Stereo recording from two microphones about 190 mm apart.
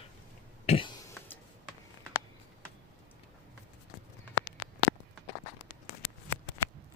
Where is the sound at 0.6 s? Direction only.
25° left (ahead or behind).